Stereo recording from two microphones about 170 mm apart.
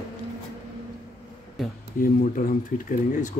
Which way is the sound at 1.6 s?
Centre (ahead or behind).